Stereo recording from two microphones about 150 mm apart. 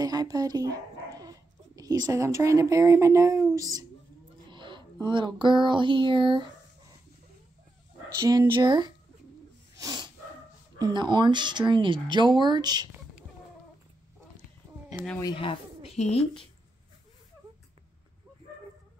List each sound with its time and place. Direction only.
0.0 s speech: 25° right (ahead or behind)
4.5 s a sound: 30° right (ahead or behind)
8.2 s speech: 25° right (ahead or behind)
9.8 s dog: 25° right (ahead or behind)
10.8 s speech: 30° right (ahead or behind)
15.3 s speech: 40° left (ahead or behind)